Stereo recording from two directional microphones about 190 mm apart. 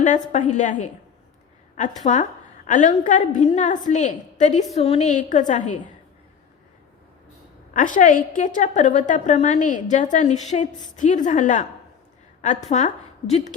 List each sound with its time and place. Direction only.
0.0 s a woman's voice: 40° left (ahead or behind)
2.0 s a woman's voice: 40° left (ahead or behind)
7.7 s a woman's voice: 45° left (ahead or behind)